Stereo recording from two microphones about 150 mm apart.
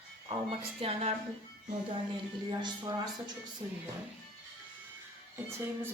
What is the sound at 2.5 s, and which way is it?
Speech, 30° right (ahead or behind).